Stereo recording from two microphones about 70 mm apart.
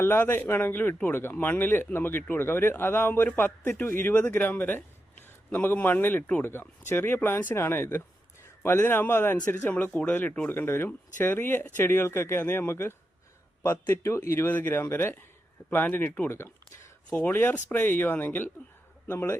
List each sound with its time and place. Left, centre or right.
0.0 s a man's voice: left
16.3 s a sound: left
17.1 s speech: left